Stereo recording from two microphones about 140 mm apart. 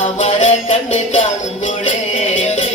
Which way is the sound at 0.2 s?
55° left (ahead or behind).